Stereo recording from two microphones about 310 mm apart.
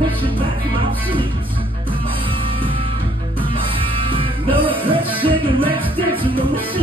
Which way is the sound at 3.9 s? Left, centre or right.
Centre.